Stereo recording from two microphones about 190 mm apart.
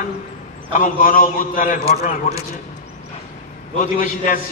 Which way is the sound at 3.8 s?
45° left (ahead or behind).